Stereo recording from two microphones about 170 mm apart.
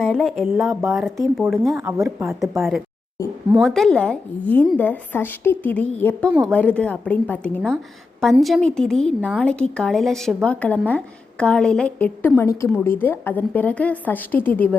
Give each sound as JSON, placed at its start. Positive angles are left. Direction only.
{"t": 0.0, "sound": "a woman's voice", "side_deg": 0}
{"t": 0.7, "sound": "speech", "side_deg": -15}
{"t": 1.4, "sound": "a woman's voice", "side_deg": 0}
{"t": 2.0, "sound": "speech", "side_deg": -15}
{"t": 2.6, "sound": "a woman's voice", "side_deg": 0}